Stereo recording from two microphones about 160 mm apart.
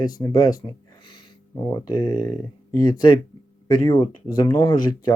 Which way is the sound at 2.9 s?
30° left (ahead or behind).